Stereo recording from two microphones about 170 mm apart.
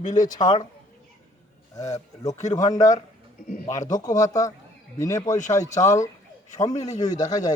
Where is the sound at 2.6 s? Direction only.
45° left (ahead or behind).